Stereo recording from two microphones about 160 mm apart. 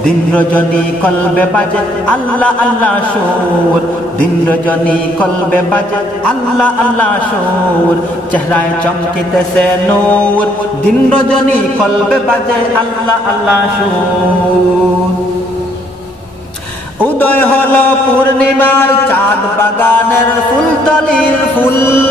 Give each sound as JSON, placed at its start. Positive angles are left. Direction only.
{"t": 0.0, "sound": "mantra", "side_deg": 10}
{"t": 4.5, "sound": "mantra", "side_deg": 10}
{"t": 9.6, "sound": "mantra", "side_deg": 5}
{"t": 11.8, "sound": "a sound", "side_deg": 5}
{"t": 17.0, "sound": "mantra", "side_deg": 10}
{"t": 21.1, "sound": "music", "side_deg": 15}